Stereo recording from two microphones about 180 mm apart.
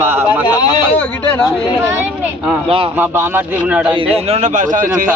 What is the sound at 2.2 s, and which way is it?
Speech, 10° right (ahead or behind).